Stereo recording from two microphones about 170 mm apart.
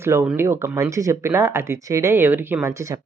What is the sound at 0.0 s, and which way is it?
Speech, 15° right (ahead or behind).